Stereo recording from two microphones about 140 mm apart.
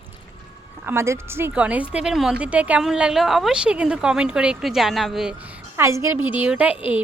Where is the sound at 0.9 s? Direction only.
20° right (ahead or behind); by 5.3 s centre (ahead or behind).